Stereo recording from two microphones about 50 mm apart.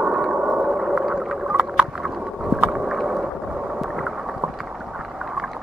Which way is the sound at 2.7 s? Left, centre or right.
Centre.